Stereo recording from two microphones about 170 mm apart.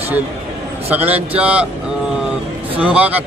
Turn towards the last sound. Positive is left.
turn(degrees=-10)  # may be behind; listen again after turning